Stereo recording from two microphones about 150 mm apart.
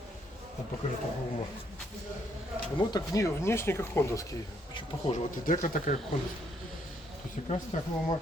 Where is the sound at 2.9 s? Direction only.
25° left (ahead or behind).